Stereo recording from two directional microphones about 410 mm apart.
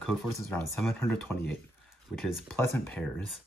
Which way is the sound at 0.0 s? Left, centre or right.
Centre.